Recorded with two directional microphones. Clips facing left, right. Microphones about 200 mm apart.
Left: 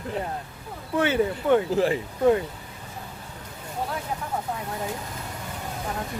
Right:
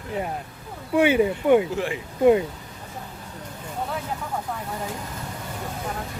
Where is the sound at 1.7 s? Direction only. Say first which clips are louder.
Left 5 dB; 35° left (ahead or behind).